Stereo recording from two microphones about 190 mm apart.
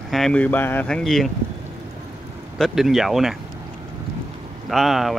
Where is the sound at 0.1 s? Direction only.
5° left (ahead or behind).